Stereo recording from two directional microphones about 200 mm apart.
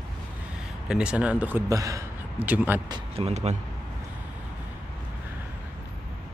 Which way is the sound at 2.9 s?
30° right (ahead or behind).